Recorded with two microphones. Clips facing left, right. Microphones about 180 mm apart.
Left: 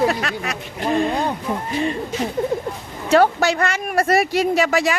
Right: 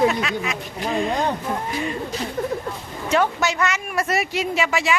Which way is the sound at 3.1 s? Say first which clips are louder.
Left 5 dB; 35° left (ahead or behind).